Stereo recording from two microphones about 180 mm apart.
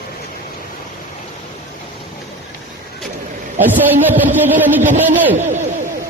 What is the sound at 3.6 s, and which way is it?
Speech, 10° right (ahead or behind).